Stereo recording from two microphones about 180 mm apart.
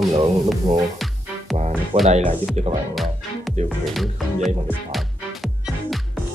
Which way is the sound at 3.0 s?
Centre (ahead or behind).